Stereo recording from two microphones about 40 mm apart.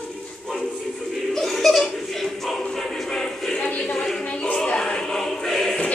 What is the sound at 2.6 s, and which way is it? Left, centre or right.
Music, centre.